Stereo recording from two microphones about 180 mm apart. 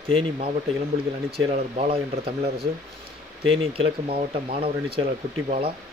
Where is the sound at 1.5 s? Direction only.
35° right (ahead or behind).